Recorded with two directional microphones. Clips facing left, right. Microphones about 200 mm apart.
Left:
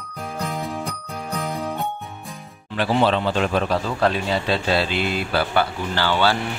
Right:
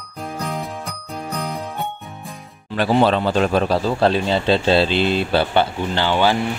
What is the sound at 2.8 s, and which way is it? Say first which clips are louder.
Speech: right 3 dB; 45° right (ahead or behind).